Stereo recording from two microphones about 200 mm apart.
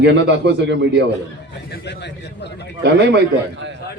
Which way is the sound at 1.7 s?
60° left (ahead or behind).